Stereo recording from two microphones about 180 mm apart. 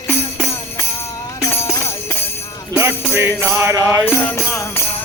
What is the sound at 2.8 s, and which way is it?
Jingle bell, 15° right (ahead or behind).